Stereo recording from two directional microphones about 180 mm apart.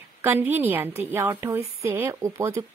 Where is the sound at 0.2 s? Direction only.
10° right (ahead or behind).